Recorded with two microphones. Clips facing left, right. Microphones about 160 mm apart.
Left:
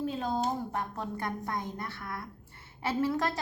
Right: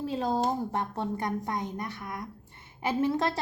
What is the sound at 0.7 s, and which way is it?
A woman's voice, 30° right (ahead or behind).